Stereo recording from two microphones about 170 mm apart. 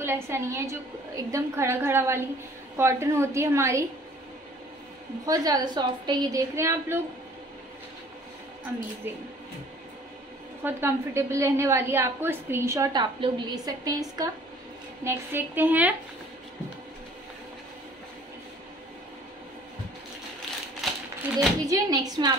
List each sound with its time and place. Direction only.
0.0 s a woman's voice: 15° right (ahead or behind)
5.2 s a woman's voice: 20° right (ahead or behind)
10.6 s a woman's voice: 15° right (ahead or behind)
20.8 s a sound: centre (ahead or behind)
21.6 s a woman's voice: 20° right (ahead or behind)